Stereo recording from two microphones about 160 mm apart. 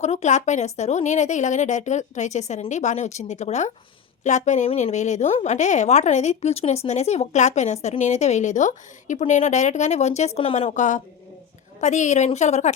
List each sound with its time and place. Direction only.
0.0 s a woman's voice: 45° left (ahead or behind)